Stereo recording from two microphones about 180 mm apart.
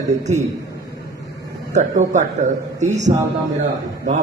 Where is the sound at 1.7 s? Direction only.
40° right (ahead or behind).